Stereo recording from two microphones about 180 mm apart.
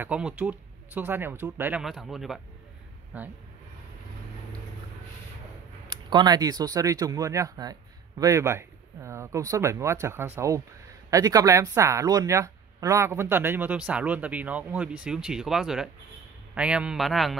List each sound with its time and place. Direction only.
0.0 s speech: 10° right (ahead or behind)
6.0 s a man's voice: 25° right (ahead or behind); by 17.4 s centre (ahead or behind)